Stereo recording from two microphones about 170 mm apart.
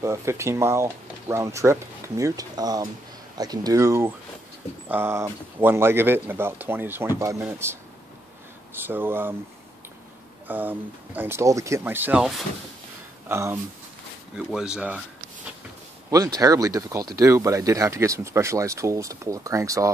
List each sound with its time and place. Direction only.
0.0 s speech: 15° right (ahead or behind)
8.7 s speech: 10° right (ahead or behind)
10.5 s speech: 10° right (ahead or behind)
14.3 s speech: 5° right (ahead or behind)
16.1 s speech: 20° right (ahead or behind)